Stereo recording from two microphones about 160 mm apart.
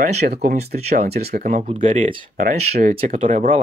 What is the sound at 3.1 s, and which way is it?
Speech, 55° right (ahead or behind).